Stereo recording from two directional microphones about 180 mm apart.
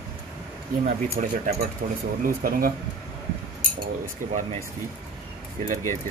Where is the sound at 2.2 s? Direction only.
50° right (ahead or behind).